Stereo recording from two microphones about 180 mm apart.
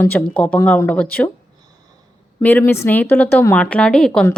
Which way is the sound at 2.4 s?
10° left (ahead or behind).